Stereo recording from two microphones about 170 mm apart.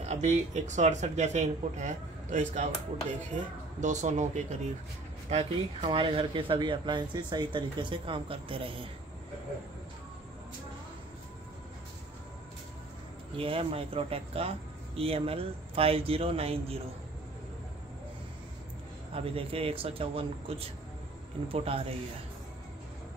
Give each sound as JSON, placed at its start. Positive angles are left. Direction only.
{"t": 0.0, "sound": "speech", "side_deg": -40}
{"t": 13.4, "sound": "speech", "side_deg": -35}
{"t": 19.1, "sound": "speech", "side_deg": -35}